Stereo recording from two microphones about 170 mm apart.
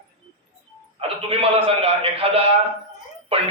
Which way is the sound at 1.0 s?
35° right (ahead or behind).